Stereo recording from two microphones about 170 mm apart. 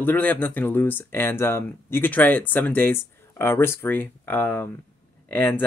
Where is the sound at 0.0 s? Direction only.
10° left (ahead or behind).